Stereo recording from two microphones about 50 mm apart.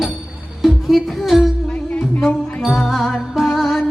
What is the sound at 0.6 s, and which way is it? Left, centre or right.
Music, centre.